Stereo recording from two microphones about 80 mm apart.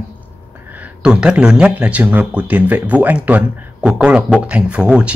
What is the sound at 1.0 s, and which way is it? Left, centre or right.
Speech, centre.